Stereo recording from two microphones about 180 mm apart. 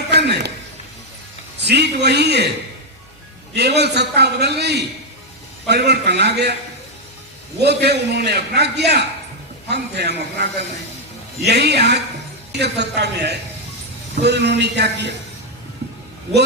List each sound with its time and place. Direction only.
0.1 s a sound: 70° right (ahead or behind)
1.5 s a man's voice: 70° right (ahead or behind)
3.5 s a man's voice: 70° right (ahead or behind)
7.6 s a man's voice: 70° right (ahead or behind)